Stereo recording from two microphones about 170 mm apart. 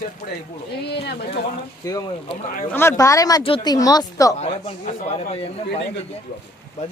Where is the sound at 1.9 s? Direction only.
20° left (ahead or behind).